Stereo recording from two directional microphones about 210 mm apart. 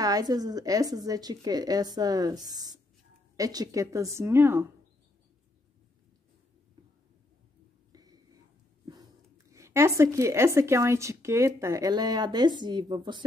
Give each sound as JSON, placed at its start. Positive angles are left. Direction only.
{"t": 0.0, "sound": "speech", "side_deg": -15}
{"t": 7.9, "sound": "a sound", "side_deg": -20}
{"t": 9.5, "sound": "speech", "side_deg": -15}